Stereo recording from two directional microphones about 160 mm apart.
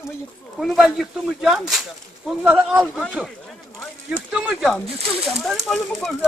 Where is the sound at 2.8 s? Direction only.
5° left (ahead or behind).